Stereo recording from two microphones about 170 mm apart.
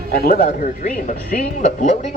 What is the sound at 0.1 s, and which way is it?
A man's voice, 60° left (ahead or behind).